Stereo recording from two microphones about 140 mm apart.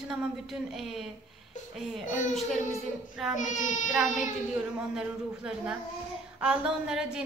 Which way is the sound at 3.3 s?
60° left (ahead or behind).